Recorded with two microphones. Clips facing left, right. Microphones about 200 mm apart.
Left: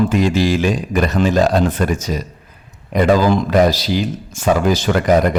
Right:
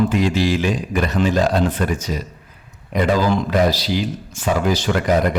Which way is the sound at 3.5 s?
45° left (ahead or behind).